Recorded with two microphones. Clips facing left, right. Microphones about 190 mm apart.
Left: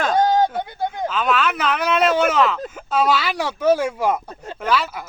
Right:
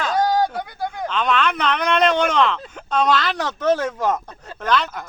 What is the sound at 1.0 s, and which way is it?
Speech, 5° left (ahead or behind).